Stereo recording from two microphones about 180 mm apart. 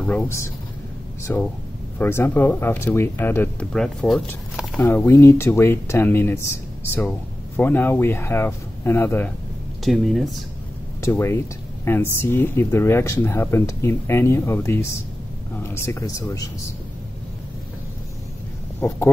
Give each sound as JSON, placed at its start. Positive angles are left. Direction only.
{"t": 0.0, "sound": "speech", "side_deg": 10}
{"t": 9.8, "sound": "speech", "side_deg": 0}
{"t": 11.0, "sound": "speech", "side_deg": 15}
{"t": 18.8, "sound": "speech", "side_deg": 10}